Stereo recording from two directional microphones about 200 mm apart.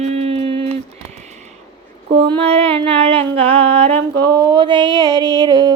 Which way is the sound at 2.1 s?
25° right (ahead or behind).